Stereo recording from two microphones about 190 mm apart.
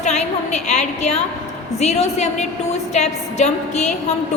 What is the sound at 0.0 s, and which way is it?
A woman's voice, 35° left (ahead or behind).